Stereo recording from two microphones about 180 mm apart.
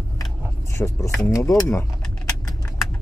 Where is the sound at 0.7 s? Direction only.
15° left (ahead or behind).